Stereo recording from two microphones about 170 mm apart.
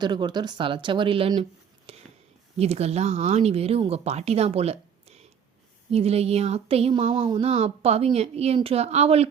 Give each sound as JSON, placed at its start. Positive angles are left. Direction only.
{"t": 0.0, "sound": "speech", "side_deg": -25}
{"t": 1.9, "sound": "a sound", "side_deg": -35}
{"t": 2.6, "sound": "speech", "side_deg": -40}